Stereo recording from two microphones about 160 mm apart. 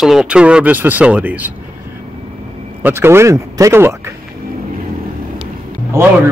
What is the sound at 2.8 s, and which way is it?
Speech, 15° right (ahead or behind).